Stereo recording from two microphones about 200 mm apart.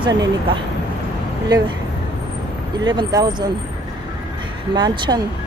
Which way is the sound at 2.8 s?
20° right (ahead or behind).